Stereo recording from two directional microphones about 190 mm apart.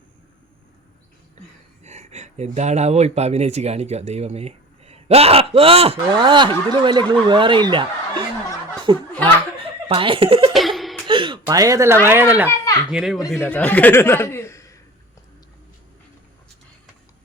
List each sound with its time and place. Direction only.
1.8 s speech: 35° right (ahead or behind)
10.5 s laughter: centre (ahead or behind)
11.0 s a sound: 25° right (ahead or behind)
12.0 s speech: 10° right (ahead or behind)
12.5 s a sound: 20° left (ahead or behind)
12.9 s speech: 5° right (ahead or behind)
13.3 s speech: 5° left (ahead or behind)